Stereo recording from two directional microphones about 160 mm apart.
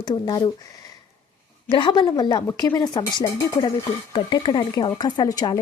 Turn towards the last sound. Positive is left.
turn(degrees=25)  # may be behind; listen again after turning